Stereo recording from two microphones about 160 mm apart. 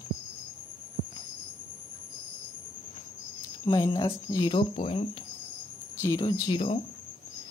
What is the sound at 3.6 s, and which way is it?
Speech, 25° left (ahead or behind).